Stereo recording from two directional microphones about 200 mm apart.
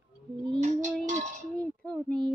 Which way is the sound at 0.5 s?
35° right (ahead or behind).